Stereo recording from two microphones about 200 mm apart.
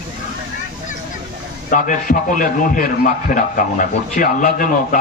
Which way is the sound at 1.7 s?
40° left (ahead or behind).